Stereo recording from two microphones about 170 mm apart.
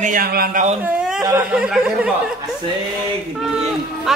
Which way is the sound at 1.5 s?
5° right (ahead or behind).